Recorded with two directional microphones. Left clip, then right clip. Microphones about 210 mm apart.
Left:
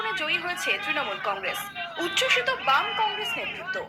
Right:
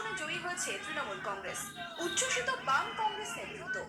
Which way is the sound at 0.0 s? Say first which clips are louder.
Left 10 dB; 30° left (ahead or behind).